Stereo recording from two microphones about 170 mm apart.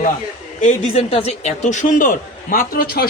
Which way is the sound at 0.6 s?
40° left (ahead or behind).